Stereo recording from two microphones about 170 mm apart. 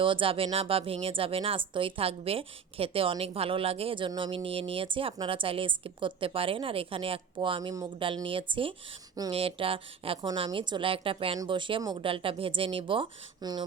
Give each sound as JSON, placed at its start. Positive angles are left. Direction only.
{"t": 0.0, "sound": "a woman's voice", "side_deg": -30}